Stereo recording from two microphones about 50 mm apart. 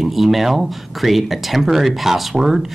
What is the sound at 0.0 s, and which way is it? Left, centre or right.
Speech, centre.